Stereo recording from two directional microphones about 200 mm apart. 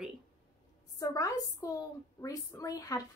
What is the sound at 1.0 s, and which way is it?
Speech, 15° left (ahead or behind).